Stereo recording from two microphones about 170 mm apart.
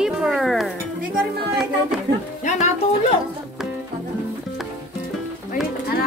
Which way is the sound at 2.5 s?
45° left (ahead or behind).